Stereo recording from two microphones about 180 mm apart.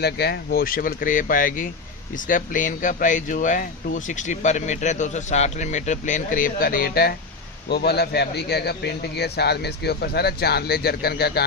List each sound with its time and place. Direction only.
0.0 s a man's voice: 65° left (ahead or behind)